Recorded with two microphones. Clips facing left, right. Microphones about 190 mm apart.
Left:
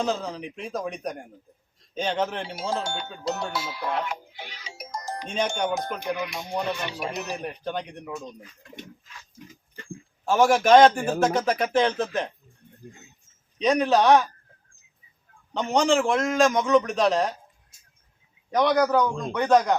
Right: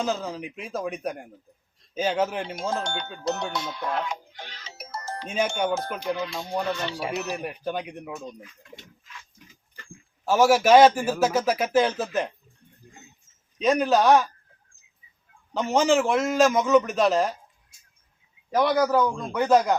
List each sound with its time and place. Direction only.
0.0 s a man's voice: centre (ahead or behind); by 6.9 s 15° left (ahead or behind)
7.4 s speech: 5° right (ahead or behind)
10.2 s a man's voice: 5° right (ahead or behind)
13.6 s a man's voice: centre (ahead or behind)
15.5 s a man's voice: 5° right (ahead or behind)
18.5 s a man's voice: 5° right (ahead or behind)